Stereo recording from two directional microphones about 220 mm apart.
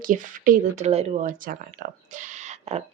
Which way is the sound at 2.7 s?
30° right (ahead or behind).